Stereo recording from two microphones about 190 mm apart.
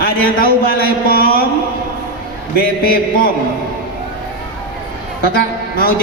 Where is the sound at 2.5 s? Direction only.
50° left (ahead or behind).